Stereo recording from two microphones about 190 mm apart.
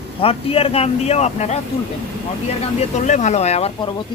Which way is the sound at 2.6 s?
35° left (ahead or behind).